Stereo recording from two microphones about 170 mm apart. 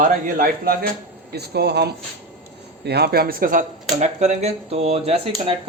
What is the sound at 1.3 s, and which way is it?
A man's voice, 75° right (ahead or behind).